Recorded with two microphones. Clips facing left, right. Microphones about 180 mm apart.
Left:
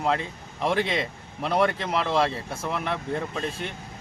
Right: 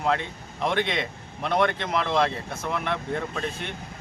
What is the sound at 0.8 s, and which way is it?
Speech, 35° left (ahead or behind).